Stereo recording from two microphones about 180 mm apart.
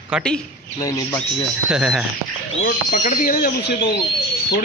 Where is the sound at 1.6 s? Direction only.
5° right (ahead or behind).